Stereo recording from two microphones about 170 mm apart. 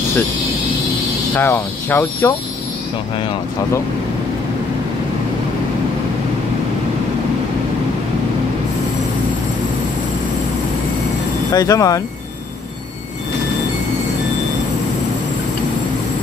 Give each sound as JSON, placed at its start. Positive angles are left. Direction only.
{"t": 1.3, "sound": "speech", "side_deg": 10}
{"t": 11.5, "sound": "speech", "side_deg": 20}